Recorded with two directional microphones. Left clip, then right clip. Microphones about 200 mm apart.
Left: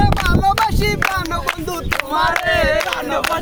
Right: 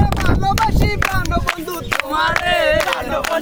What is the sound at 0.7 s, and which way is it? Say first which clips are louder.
Speech: left 1 dB; 50° left (ahead or behind).